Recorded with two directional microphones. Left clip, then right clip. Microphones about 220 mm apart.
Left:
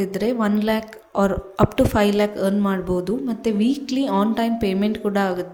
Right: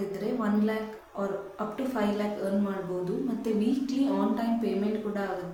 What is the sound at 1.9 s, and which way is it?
A woman's voice, 45° left (ahead or behind).